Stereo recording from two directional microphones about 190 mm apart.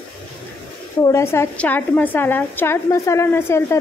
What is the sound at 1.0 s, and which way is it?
A woman's voice, 15° left (ahead or behind).